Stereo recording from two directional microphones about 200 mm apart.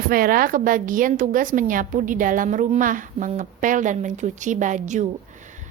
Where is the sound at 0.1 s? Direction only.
45° right (ahead or behind).